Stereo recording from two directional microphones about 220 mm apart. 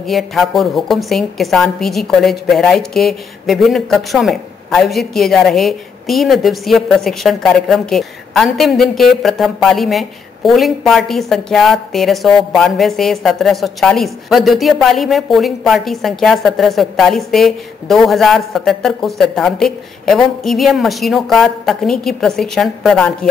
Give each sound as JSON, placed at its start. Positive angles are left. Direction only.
{"t": 0.0, "sound": "a woman's voice", "side_deg": 0}